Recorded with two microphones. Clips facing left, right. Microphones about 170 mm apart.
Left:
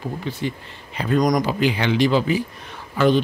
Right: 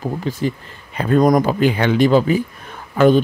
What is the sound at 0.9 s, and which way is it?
Speech, 55° right (ahead or behind).